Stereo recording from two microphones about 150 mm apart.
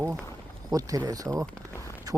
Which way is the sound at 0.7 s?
25° right (ahead or behind).